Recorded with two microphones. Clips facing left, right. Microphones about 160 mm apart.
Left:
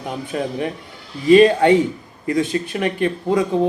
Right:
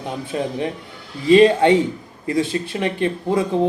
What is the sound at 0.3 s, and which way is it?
A man's voice, 20° right (ahead or behind).